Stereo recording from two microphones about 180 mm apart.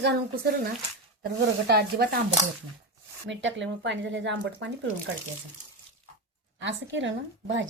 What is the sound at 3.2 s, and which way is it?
Speech, 90° right.